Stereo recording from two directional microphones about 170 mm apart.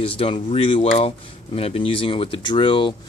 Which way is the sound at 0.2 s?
35° left (ahead or behind).